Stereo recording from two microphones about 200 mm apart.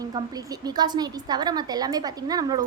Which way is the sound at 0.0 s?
20° right (ahead or behind).